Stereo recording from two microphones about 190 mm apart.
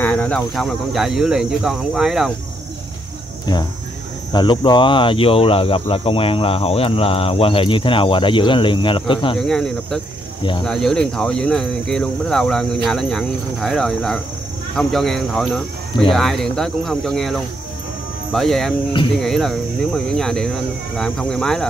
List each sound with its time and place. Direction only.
0.0 s speech: 5° left (ahead or behind)
4.3 s speech: 25° left (ahead or behind)
9.4 s speech: 5° left (ahead or behind)